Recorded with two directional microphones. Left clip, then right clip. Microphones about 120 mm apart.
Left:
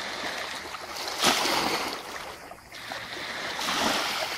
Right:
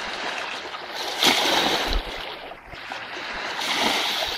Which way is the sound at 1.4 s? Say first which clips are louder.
Right 5 dB; 20° right (ahead or behind).